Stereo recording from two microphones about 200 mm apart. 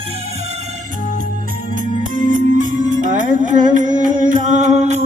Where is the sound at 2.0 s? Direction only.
40° right (ahead or behind).